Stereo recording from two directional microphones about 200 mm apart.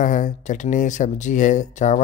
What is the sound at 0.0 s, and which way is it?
Speech, 40° left (ahead or behind).